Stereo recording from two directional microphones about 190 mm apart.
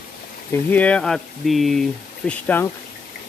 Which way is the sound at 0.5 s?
10° left (ahead or behind).